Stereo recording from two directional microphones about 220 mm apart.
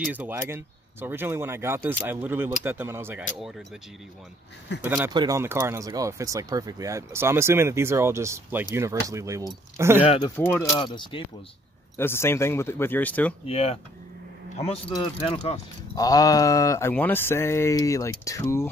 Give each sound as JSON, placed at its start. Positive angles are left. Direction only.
{"t": 0.1, "sound": "speech", "side_deg": -5}
{"t": 4.8, "sound": "speech", "side_deg": -10}
{"t": 10.0, "sound": "speech", "side_deg": 30}
{"t": 10.3, "sound": "speech", "side_deg": 10}
{"t": 12.0, "sound": "speech", "side_deg": 10}
{"t": 13.5, "sound": "speech", "side_deg": 30}
{"t": 15.2, "sound": "speech", "side_deg": 25}